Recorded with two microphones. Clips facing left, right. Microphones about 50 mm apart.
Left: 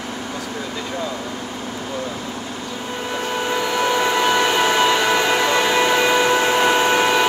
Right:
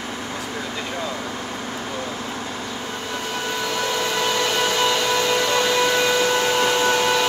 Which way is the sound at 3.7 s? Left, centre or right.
Left.